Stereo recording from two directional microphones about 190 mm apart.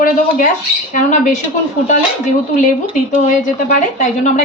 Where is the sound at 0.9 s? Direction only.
40° left (ahead or behind).